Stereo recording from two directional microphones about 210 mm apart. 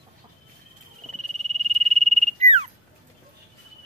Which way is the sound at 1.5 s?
30° right (ahead or behind).